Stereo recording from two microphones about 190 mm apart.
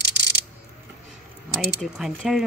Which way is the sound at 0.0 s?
65° right (ahead or behind).